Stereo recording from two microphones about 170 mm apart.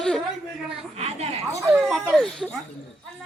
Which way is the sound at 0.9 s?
40° right (ahead or behind).